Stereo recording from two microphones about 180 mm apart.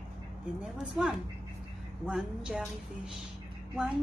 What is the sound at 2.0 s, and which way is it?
Music, 5° right (ahead or behind).